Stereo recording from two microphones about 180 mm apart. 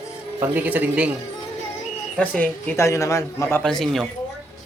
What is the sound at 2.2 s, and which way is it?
A man's voice, 10° left (ahead or behind).